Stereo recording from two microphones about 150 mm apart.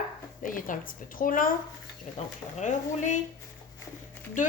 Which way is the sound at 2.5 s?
55° left (ahead or behind).